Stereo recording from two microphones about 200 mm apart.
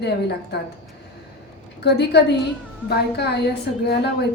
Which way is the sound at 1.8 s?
55° left (ahead or behind).